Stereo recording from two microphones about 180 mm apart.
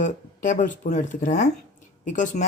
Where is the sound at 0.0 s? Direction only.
45° left (ahead or behind).